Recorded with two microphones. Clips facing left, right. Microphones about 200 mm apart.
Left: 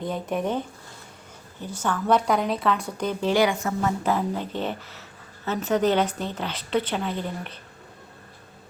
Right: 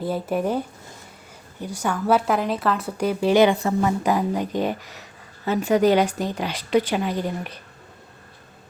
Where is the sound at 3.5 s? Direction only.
35° right (ahead or behind).